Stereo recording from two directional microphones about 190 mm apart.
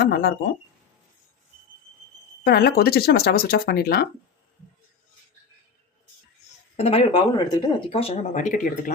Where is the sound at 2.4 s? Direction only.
55° left (ahead or behind).